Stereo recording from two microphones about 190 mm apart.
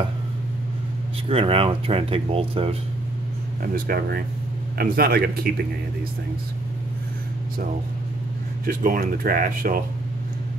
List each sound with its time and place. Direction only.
1.3 s speech: 30° right (ahead or behind)
3.6 s speech: 45° right (ahead or behind)
8.6 s speech: 45° right (ahead or behind)